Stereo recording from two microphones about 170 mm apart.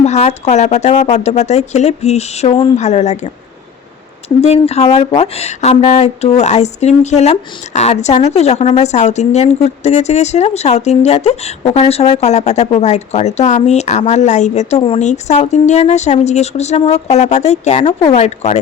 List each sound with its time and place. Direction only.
0.0 s speech: 40° left (ahead or behind)
4.4 s speech: 40° left (ahead or behind)
14.8 s speech: 30° left (ahead or behind)
15.0 s speech: 45° left (ahead or behind)